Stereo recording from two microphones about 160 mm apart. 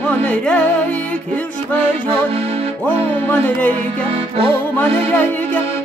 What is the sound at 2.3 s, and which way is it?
Music, 40° right (ahead or behind).